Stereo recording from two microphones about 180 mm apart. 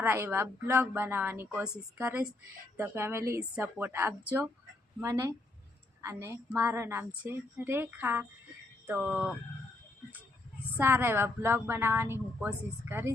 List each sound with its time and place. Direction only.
0.0 s a woman's voice: 10° right (ahead or behind)
10.8 s a woman's voice: 15° right (ahead or behind)